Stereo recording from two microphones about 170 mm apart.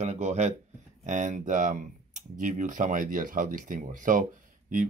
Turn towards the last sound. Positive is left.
turn(degrees=-50)  # may be behind; listen again after turning